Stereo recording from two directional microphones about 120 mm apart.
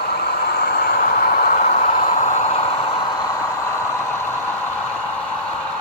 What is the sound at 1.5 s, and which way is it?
Vehicle, 80° left.